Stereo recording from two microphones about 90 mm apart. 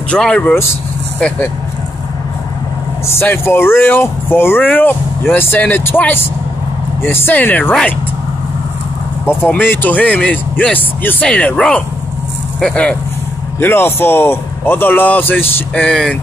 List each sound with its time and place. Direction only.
0.1 s speech: 10° left (ahead or behind)
3.1 s speech: 30° left (ahead or behind)
9.2 s speech: 25° left (ahead or behind)
13.6 s speech: 25° left (ahead or behind)